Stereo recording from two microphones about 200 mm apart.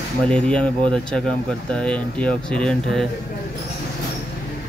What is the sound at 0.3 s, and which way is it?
Speech, 5° left (ahead or behind).